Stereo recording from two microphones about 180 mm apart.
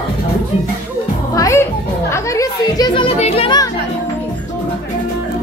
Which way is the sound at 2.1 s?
15° left (ahead or behind).